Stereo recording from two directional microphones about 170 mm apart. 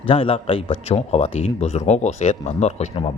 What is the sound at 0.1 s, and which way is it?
A man's voice, 35° left (ahead or behind).